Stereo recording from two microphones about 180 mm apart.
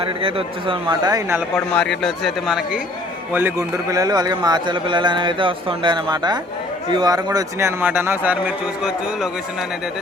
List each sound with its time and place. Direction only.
0.0 s a man's voice: 30° right (ahead or behind)
1.5 s a man's voice: 5° left (ahead or behind)
3.3 s a man's voice: 15° right (ahead or behind)